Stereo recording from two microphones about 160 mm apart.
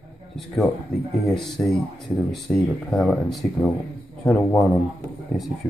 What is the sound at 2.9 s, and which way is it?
Speech, centre (ahead or behind).